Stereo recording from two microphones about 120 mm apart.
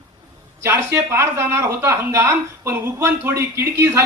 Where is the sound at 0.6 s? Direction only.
20° right (ahead or behind).